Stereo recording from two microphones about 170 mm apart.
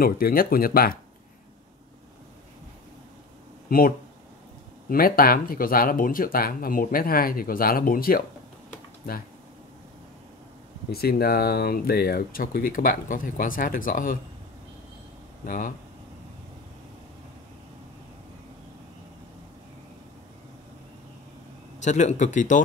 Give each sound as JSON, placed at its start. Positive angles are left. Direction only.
{"t": 0.0, "sound": "speech", "side_deg": 60}
{"t": 3.6, "sound": "speech", "side_deg": 60}
{"t": 10.9, "sound": "speech", "side_deg": 65}
{"t": 15.4, "sound": "a man's voice", "side_deg": 55}
{"t": 21.8, "sound": "a man's voice", "side_deg": 45}